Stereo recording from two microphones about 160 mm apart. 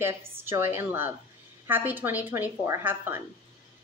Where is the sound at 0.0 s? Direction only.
15° right (ahead or behind).